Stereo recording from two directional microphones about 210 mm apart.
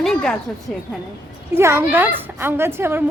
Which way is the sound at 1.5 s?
10° right (ahead or behind).